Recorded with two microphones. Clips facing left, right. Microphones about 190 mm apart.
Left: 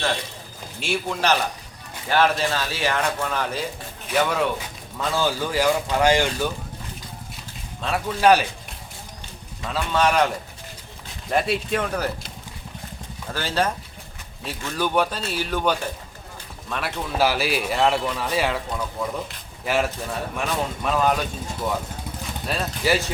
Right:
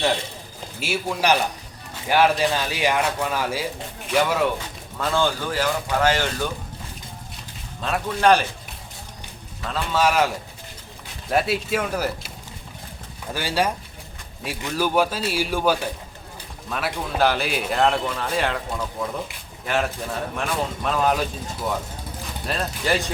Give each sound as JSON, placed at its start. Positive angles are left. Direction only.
{"t": 0.8, "sound": "a man's voice", "side_deg": -5}
{"t": 7.8, "sound": "a man's voice", "side_deg": 0}
{"t": 9.6, "sound": "a man's voice", "side_deg": 0}
{"t": 13.3, "sound": "a man's voice", "side_deg": -10}
{"t": 22.4, "sound": "a man's voice", "side_deg": 5}